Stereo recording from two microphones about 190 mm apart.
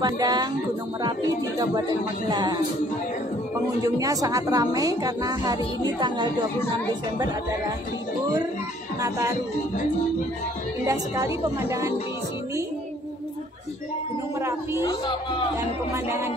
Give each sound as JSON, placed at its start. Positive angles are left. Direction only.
{"t": 0.0, "sound": "a woman's voice", "side_deg": -20}
{"t": 2.2, "sound": "a woman's voice", "side_deg": -20}
{"t": 3.8, "sound": "a woman's voice", "side_deg": -20}
{"t": 9.0, "sound": "a woman's voice", "side_deg": -15}
{"t": 10.9, "sound": "a woman's voice", "side_deg": -15}
{"t": 14.8, "sound": "speech", "side_deg": 20}
{"t": 15.9, "sound": "a woman's voice", "side_deg": -15}